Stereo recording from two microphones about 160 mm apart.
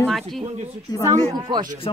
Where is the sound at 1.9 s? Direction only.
35° left (ahead or behind).